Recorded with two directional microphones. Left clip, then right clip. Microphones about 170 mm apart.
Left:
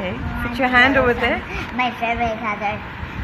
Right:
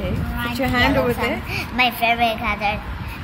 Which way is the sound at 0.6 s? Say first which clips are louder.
Left 4 dB; 10° right (ahead or behind).